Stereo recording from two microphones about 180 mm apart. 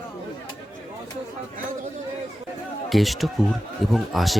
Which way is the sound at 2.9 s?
Centre (ahead or behind).